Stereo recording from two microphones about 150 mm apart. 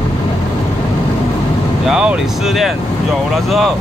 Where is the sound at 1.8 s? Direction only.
5° right (ahead or behind).